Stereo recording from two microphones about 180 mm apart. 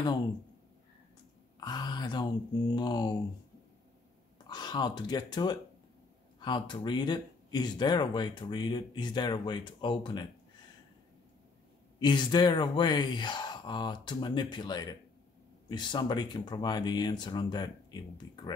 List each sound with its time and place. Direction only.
1.6 s speech: 25° left (ahead or behind)
4.5 s speech: 25° left (ahead or behind)
12.0 s speech: 25° left (ahead or behind)